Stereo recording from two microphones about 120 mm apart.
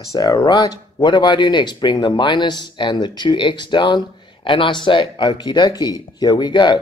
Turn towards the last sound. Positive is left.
turn(degrees=40)  # may be behind; listen again after turning